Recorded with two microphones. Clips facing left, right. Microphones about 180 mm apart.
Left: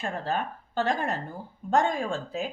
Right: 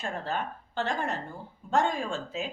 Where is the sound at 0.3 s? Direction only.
40° left (ahead or behind).